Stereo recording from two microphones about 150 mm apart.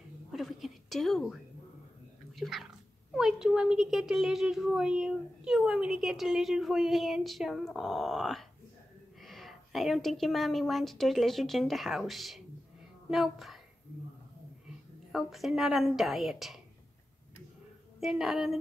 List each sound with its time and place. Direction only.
0.3 s a sound: centre (ahead or behind)
2.3 s speech: centre (ahead or behind)
15.1 s speech: centre (ahead or behind)
18.0 s speech: centre (ahead or behind)